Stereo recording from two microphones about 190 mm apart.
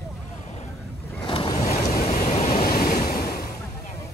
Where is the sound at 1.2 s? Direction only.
25° left (ahead or behind).